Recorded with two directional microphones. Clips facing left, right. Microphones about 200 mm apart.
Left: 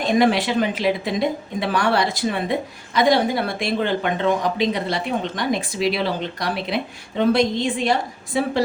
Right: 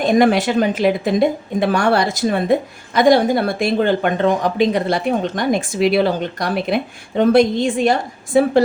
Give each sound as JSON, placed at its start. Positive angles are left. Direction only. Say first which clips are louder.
{"t": 0.1, "sound": "speech", "louder": "right 3 dB", "side_deg": -50}